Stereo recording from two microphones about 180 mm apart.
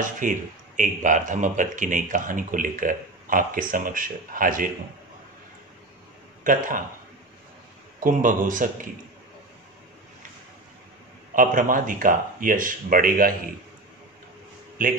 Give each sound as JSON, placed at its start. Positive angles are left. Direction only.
{"t": 0.0, "sound": "speech", "side_deg": -45}
{"t": 6.4, "sound": "speech", "side_deg": -50}
{"t": 8.0, "sound": "speech", "side_deg": -50}
{"t": 11.3, "sound": "speech", "side_deg": -50}
{"t": 14.8, "sound": "speech", "side_deg": -50}